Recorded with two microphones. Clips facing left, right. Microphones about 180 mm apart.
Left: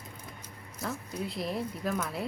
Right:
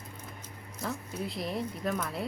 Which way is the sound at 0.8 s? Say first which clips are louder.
Even; centre (ahead or behind).